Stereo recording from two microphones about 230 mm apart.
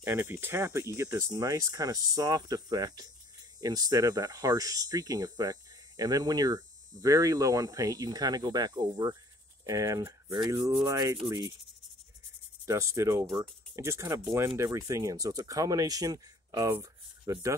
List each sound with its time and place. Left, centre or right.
0.0 s speech: centre
12.6 s speech: centre